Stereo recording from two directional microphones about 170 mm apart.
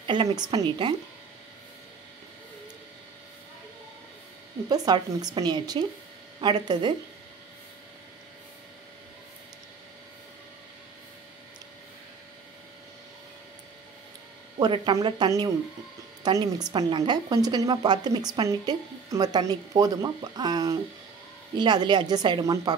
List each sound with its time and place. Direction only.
0.0 s a woman's voice: 30° right (ahead or behind)
4.6 s a woman's voice: 25° right (ahead or behind)
14.6 s a woman's voice: 25° right (ahead or behind)